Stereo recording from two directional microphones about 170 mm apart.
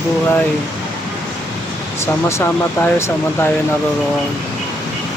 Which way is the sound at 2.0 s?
15° left (ahead or behind).